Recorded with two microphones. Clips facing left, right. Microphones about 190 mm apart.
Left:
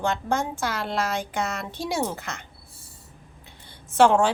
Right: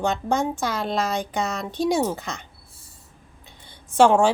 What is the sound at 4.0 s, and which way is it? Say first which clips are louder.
Speech: right 2 dB; 15° right (ahead or behind).